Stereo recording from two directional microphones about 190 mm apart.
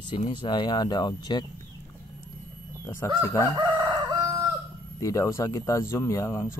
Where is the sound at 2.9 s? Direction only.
15° left (ahead or behind).